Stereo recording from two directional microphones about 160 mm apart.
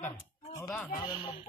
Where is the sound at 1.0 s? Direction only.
35° left (ahead or behind).